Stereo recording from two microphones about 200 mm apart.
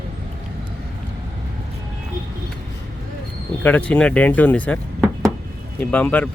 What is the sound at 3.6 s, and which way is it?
Speech, 5° left (ahead or behind).